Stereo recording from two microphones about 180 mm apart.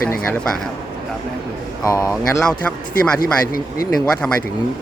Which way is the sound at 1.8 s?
20° left (ahead or behind).